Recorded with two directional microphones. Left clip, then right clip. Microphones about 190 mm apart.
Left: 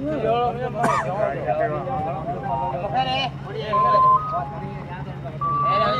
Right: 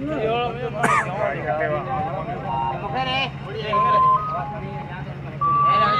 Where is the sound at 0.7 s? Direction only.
15° right (ahead or behind).